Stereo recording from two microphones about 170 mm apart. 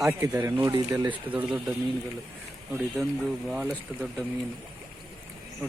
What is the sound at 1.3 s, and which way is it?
Speech, 10° right (ahead or behind).